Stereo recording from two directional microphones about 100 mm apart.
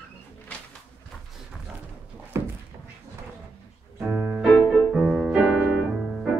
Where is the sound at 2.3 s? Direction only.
25° right (ahead or behind).